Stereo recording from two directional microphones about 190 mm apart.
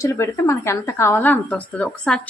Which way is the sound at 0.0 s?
15° left (ahead or behind).